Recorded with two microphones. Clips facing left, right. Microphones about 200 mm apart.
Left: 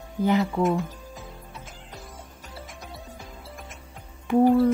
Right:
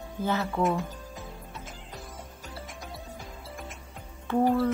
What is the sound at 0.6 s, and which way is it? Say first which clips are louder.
Speech: left 3 dB; centre (ahead or behind).